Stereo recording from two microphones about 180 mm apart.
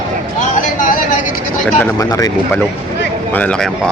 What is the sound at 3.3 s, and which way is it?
Speech, 5° left (ahead or behind).